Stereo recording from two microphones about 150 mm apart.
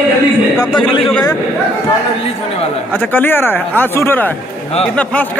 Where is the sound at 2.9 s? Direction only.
15° left (ahead or behind).